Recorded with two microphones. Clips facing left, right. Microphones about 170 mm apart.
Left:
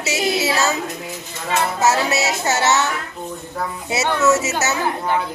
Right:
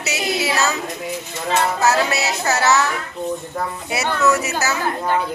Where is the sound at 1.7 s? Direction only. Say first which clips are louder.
Even; 25° left (ahead or behind).